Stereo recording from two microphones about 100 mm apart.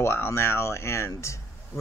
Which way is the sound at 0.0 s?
25° left (ahead or behind).